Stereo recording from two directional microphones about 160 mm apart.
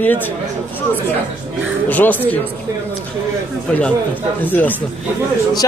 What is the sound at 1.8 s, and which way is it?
Speech, 10° left (ahead or behind).